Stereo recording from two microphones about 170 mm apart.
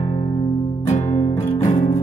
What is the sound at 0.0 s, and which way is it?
Music, 25° left (ahead or behind).